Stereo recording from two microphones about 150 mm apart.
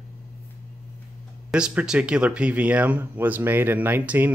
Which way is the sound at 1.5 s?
5° right (ahead or behind).